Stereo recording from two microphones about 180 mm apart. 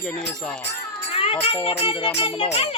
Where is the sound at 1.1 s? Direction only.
30° left (ahead or behind).